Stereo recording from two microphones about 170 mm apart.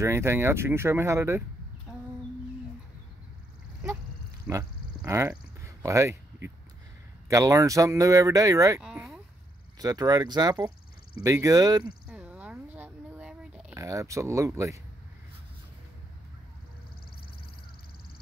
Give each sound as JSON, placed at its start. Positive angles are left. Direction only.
{"t": 0.0, "sound": "speech", "side_deg": -15}
{"t": 4.5, "sound": "a sound", "side_deg": -15}
{"t": 7.2, "sound": "speech", "side_deg": -20}
{"t": 8.8, "sound": "speech", "side_deg": -5}
{"t": 9.8, "sound": "speech", "side_deg": -20}
{"t": 12.1, "sound": "a sound", "side_deg": -10}
{"t": 13.7, "sound": "speech", "side_deg": -20}